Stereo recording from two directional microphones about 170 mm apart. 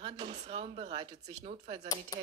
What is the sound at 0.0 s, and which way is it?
Speech, 35° right (ahead or behind).